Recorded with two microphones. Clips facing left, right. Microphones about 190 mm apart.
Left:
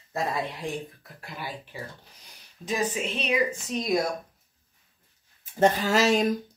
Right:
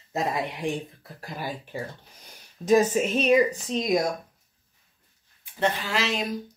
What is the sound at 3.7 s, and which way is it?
Speech, 20° right (ahead or behind).